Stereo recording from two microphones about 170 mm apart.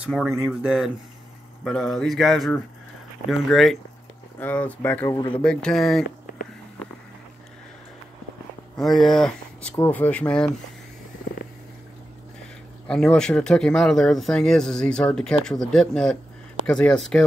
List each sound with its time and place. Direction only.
0.0 s speech: 5° right (ahead or behind)
8.7 s speech: centre (ahead or behind)
12.8 s speech: 5° left (ahead or behind)